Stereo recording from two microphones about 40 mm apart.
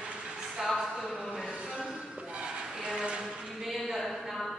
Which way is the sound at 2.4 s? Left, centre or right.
Right.